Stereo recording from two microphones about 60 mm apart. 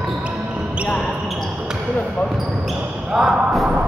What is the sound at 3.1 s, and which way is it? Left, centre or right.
Speech, centre.